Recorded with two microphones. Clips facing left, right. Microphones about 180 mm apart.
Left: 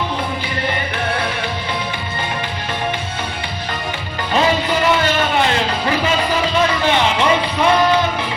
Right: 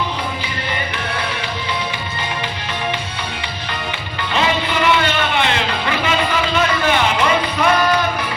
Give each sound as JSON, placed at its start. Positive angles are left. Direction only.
{"t": 4.4, "sound": "music", "side_deg": 40}